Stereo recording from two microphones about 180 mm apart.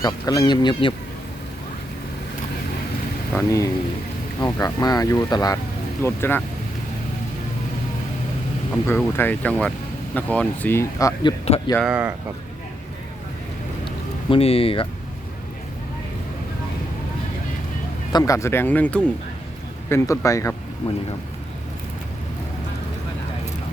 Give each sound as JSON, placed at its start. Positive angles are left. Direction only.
{"t": 0.0, "sound": "speech", "side_deg": 20}
{"t": 3.3, "sound": "speech", "side_deg": 15}
{"t": 8.7, "sound": "speech", "side_deg": 10}
{"t": 11.8, "sound": "speech", "side_deg": -5}
{"t": 14.3, "sound": "speech", "side_deg": 30}
{"t": 18.1, "sound": "speech", "side_deg": 20}